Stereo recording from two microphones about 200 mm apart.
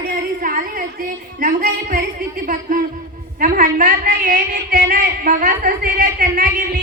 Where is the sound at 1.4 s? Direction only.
40° right (ahead or behind).